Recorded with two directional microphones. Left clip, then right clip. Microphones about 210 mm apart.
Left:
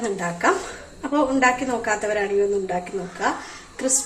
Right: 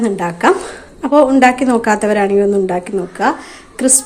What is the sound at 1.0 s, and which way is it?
A woman's voice, 55° right (ahead or behind).